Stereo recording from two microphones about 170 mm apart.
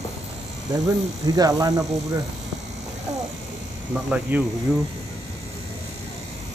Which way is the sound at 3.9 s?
5° right (ahead or behind).